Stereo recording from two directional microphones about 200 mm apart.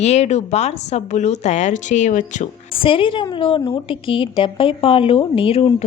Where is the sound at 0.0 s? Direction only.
35° left (ahead or behind).